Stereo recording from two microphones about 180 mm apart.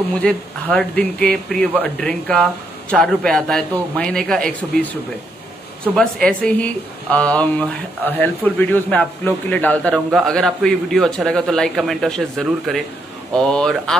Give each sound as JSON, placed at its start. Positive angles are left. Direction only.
{"t": 0.1, "sound": "speech", "side_deg": 5}
{"t": 5.9, "sound": "speech", "side_deg": 5}